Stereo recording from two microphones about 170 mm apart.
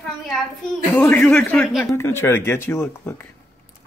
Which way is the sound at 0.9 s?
5° left (ahead or behind).